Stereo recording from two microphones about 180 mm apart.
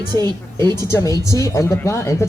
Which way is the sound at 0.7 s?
15° left (ahead or behind).